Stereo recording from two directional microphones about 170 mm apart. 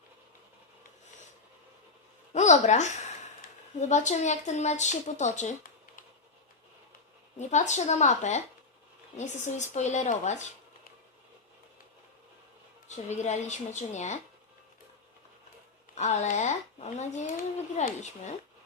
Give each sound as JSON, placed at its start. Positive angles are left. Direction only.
{"t": 2.3, "sound": "speech", "side_deg": 45}
{"t": 7.3, "sound": "speech", "side_deg": 45}
{"t": 12.9, "sound": "speech", "side_deg": 45}
{"t": 16.0, "sound": "speech", "side_deg": 40}